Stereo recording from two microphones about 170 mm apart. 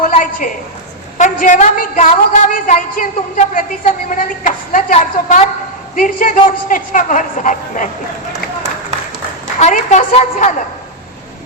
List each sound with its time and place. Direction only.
0.0 s a sound: 50° left (ahead or behind)
1.2 s a woman's voice: 50° left (ahead or behind)
9.6 s a woman's voice: 45° left (ahead or behind)